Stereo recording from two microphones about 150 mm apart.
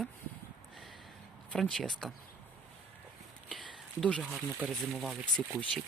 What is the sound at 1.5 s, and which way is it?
Speech, centre (ahead or behind).